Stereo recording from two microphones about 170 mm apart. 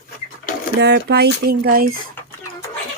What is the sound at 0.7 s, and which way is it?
Speech, 80° right.